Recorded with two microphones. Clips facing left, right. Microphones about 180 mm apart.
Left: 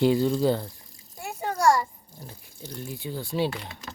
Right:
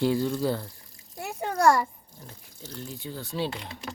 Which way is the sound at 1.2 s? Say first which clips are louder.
Right 1 dB; 60° right (ahead or behind).